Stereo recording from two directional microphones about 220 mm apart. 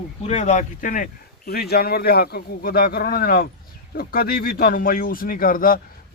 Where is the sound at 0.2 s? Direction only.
30° left (ahead or behind).